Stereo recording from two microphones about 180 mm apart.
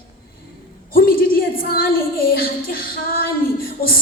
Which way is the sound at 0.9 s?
55° left (ahead or behind).